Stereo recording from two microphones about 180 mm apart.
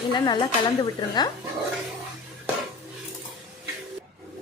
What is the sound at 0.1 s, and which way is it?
A woman's voice, 25° left (ahead or behind).